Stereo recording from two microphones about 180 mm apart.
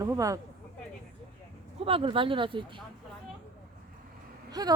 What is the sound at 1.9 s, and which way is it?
Speech, 30° right (ahead or behind).